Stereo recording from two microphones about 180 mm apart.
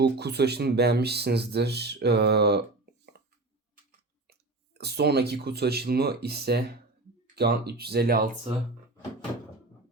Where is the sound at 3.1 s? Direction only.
60° right (ahead or behind).